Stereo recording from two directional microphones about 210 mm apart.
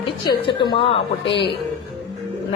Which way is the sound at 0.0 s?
20° left (ahead or behind).